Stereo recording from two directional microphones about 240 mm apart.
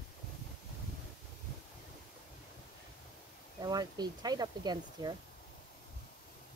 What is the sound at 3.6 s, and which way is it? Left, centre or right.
Speech, centre.